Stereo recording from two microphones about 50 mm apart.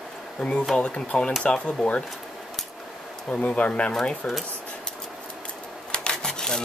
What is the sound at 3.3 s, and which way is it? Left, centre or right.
Speech, left.